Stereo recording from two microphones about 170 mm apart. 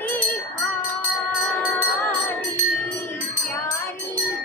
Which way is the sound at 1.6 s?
10° left (ahead or behind).